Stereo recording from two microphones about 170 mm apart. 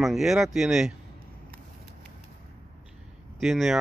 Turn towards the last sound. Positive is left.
turn(degrees=0)  # may be behind; listen again after turning